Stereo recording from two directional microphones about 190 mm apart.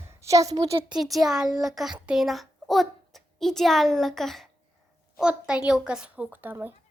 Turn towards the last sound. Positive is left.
turn(degrees=-10)  # may be behind; listen again after turning